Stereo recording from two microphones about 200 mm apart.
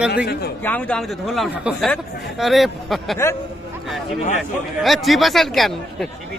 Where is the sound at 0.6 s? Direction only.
10° left (ahead or behind).